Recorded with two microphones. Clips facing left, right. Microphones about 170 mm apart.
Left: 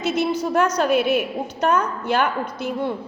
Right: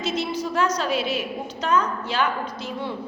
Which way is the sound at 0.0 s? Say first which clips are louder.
Left 4 dB; 55° left (ahead or behind).